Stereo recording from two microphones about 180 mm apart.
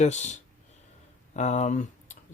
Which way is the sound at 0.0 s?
40° left (ahead or behind).